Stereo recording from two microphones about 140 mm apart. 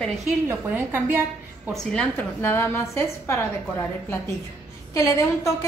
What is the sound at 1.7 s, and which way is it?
Speech, 5° left (ahead or behind).